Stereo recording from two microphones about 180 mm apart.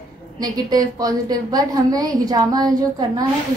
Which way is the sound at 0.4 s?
20° right (ahead or behind).